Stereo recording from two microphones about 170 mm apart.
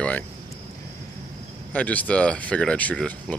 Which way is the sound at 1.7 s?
10° left (ahead or behind).